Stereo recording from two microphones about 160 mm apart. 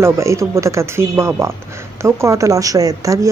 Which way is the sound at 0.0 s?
20° right (ahead or behind).